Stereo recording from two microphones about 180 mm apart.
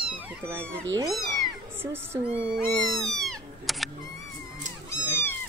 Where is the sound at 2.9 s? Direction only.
Centre (ahead or behind).